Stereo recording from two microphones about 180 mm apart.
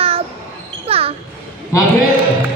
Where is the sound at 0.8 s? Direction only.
35° right (ahead or behind).